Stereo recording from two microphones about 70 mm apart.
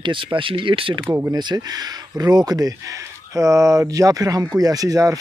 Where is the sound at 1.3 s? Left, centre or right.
Right.